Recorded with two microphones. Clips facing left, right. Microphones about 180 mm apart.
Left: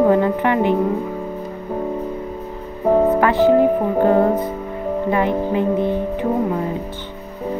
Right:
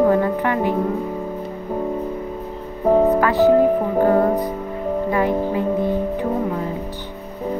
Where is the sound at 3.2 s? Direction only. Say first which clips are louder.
Left 1 dB; 20° left (ahead or behind).